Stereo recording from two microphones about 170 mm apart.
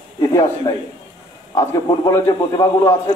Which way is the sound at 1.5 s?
20° left (ahead or behind).